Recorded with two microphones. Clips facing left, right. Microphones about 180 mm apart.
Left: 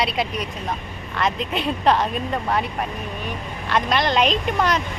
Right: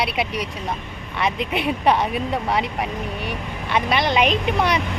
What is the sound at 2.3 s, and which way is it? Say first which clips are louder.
Speech: right 1 dB; 10° right (ahead or behind).